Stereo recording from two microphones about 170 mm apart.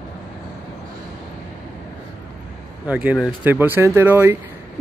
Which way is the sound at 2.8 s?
10° right (ahead or behind).